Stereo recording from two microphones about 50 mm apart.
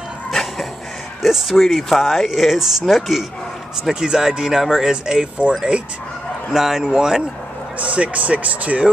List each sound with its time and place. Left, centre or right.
0.3 s a sound: centre
1.2 s speech: centre
6.5 s speech: centre
7.8 s speech: right